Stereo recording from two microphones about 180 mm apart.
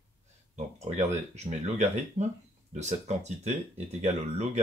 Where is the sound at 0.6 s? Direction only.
40° right (ahead or behind).